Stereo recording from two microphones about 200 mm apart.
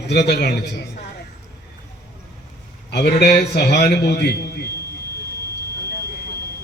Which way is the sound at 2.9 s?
55° left (ahead or behind).